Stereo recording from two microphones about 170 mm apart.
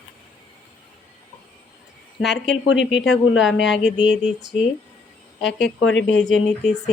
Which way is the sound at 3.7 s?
Centre (ahead or behind).